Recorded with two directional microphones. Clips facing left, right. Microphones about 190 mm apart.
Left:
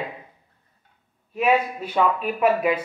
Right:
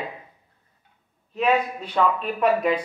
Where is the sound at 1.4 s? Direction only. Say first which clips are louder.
Left 1 dB; 5° left (ahead or behind).